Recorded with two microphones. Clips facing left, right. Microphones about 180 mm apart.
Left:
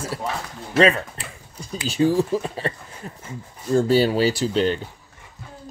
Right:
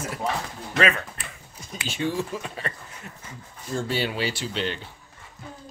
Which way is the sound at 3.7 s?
40° left (ahead or behind).